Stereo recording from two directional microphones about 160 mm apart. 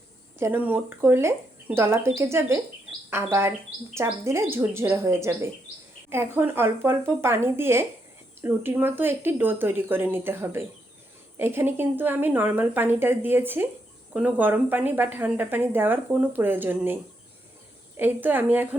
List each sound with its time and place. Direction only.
0.3 s a woman's voice: 15° right (ahead or behind)
3.9 s a woman's voice: 15° right (ahead or behind)